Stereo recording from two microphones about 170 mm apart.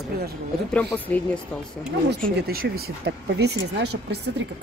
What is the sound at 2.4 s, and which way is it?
Speech, 65° right (ahead or behind).